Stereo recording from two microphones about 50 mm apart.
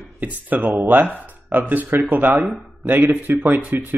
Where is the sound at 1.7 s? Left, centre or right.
Right.